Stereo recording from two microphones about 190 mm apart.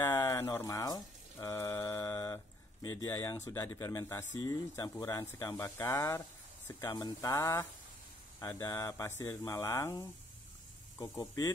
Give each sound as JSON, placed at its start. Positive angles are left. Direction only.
{"t": 0.0, "sound": "music", "side_deg": 10}
{"t": 4.4, "sound": "speech", "side_deg": 20}